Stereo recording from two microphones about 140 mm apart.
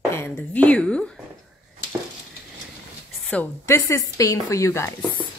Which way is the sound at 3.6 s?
20° left (ahead or behind).